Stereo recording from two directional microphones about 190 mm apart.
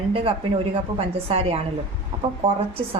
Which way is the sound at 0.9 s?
30° right (ahead or behind).